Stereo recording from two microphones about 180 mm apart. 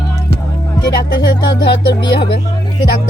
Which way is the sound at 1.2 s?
70° left (ahead or behind).